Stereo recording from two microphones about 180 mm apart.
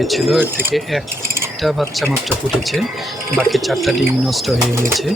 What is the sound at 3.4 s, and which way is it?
Speech, centre (ahead or behind).